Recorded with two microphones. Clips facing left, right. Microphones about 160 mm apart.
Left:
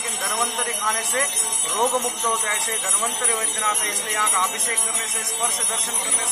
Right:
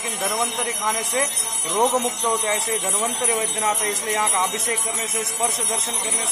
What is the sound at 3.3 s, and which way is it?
Speech, 20° right (ahead or behind).